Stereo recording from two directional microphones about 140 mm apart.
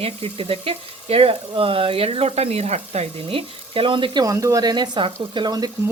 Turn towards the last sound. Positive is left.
turn(degrees=-30)  # may be behind; listen again after turning